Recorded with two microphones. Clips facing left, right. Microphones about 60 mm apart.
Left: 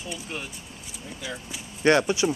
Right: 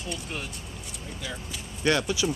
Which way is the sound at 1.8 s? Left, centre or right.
Left.